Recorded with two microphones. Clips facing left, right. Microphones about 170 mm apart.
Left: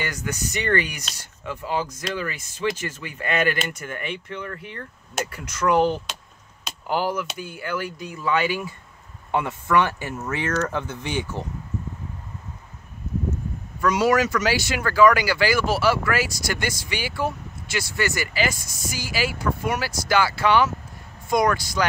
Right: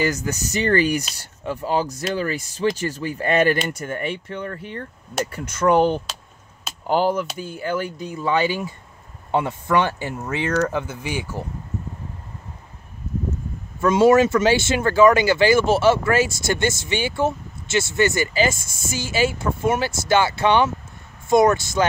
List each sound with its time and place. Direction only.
0.0 s speech: 35° right (ahead or behind)
10.5 s speech: 10° right (ahead or behind)
13.7 s speech: 25° right (ahead or behind)